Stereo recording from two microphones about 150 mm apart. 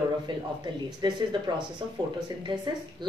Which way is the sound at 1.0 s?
30° right (ahead or behind).